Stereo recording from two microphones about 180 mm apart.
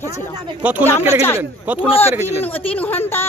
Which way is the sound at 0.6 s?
10° right (ahead or behind).